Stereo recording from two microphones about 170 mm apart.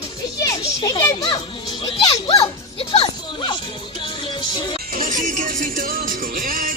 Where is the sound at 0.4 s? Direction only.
25° left (ahead or behind).